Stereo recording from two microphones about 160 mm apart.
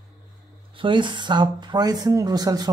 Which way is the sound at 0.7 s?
30° right (ahead or behind).